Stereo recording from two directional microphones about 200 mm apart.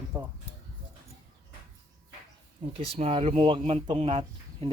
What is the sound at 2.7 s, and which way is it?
Speech, 30° right (ahead or behind).